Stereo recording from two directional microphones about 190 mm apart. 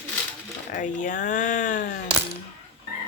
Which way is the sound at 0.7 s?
40° left (ahead or behind).